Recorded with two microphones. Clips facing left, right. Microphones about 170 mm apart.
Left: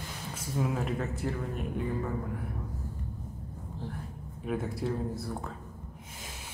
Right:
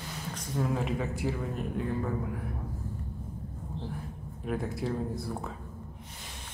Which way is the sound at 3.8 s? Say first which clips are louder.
Right 1 dB; 90° right.